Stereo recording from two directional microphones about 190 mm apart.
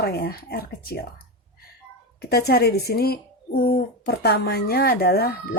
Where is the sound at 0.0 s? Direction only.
55° left (ahead or behind).